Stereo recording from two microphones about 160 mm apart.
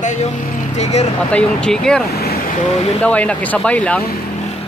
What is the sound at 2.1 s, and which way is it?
Speech, 80° left.